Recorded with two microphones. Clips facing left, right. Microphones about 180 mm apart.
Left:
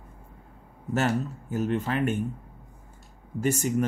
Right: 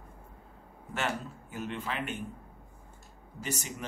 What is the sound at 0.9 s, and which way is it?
Speech, 40° left (ahead or behind).